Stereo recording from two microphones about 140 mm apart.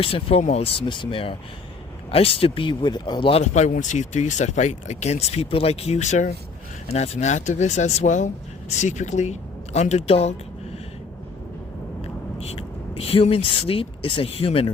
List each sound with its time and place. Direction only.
0.0 s speech: 45° left (ahead or behind)
3.4 s speech: 55° left (ahead or behind)
12.0 s speech: 45° left (ahead or behind)